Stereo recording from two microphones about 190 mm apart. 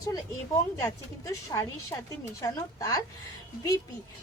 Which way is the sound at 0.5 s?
15° left (ahead or behind).